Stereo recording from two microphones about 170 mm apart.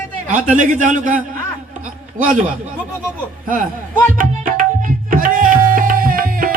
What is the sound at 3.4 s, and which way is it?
A man's voice, 50° right (ahead or behind).